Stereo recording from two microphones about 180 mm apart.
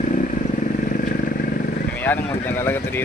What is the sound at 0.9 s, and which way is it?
Vehicle, 50° left (ahead or behind).